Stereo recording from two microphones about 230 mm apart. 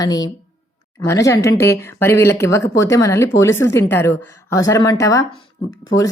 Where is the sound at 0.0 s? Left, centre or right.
Centre.